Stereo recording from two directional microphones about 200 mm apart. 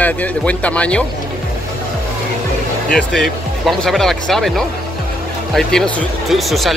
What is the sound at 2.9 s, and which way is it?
Speech, centre (ahead or behind).